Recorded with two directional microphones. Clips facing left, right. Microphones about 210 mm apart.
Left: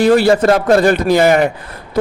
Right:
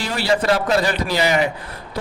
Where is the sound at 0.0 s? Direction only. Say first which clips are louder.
Left 10 dB; 50° left (ahead or behind).